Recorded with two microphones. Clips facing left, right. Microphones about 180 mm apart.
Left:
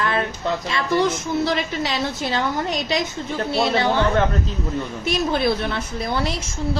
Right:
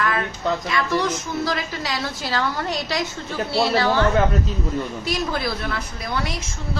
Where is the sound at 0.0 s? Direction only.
25° left (ahead or behind).